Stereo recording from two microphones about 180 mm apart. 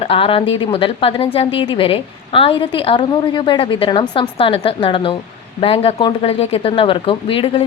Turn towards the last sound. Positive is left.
turn(degrees=30)  # may be behind; listen again after turning